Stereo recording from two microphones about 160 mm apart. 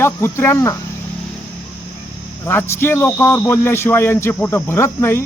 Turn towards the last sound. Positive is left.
turn(degrees=15)  # may be behind; listen again after turning